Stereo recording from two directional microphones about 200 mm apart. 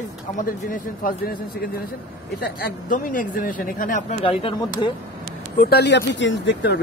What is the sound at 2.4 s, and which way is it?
Speech, 45° left (ahead or behind).